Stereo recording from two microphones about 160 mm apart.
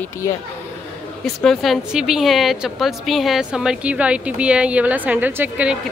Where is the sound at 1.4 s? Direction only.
Centre (ahead or behind).